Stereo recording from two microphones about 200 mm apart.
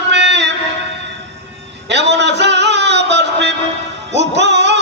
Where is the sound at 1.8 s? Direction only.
60° right (ahead or behind).